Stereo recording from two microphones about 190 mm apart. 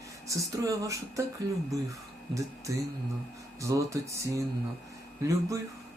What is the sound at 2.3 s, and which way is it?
Music, 15° right (ahead or behind).